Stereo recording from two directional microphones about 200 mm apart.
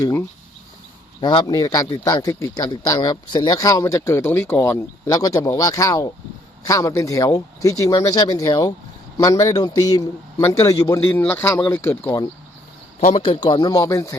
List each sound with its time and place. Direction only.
1.2 s a man's voice: 20° left (ahead or behind)
13.1 s speech: 25° left (ahead or behind)